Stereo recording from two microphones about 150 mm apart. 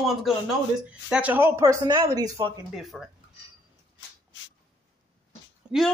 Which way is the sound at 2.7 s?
Centre (ahead or behind).